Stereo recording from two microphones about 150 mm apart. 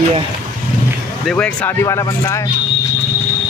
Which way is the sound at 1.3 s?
5° left (ahead or behind).